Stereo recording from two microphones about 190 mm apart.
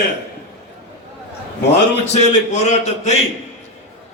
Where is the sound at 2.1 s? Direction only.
35° left (ahead or behind).